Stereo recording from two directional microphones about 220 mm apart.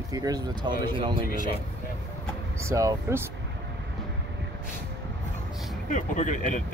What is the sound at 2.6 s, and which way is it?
Speech, 15° right (ahead or behind).